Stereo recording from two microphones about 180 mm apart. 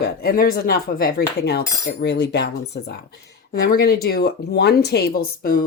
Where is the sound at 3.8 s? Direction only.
60° left (ahead or behind).